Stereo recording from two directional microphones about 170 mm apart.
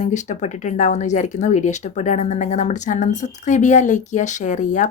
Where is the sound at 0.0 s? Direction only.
45° left (ahead or behind).